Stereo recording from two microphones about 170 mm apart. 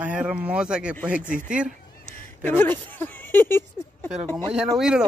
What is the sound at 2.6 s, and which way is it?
Speech, 10° left (ahead or behind).